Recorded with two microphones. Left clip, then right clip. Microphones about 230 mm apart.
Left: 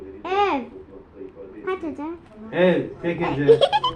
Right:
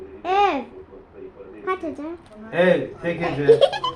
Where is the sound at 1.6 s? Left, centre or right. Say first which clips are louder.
Right 2 dB; centre.